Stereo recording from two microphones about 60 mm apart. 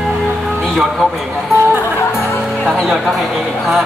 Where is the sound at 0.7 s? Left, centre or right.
Centre.